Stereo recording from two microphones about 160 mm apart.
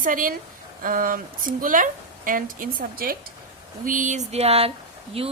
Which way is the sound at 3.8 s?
55° right (ahead or behind).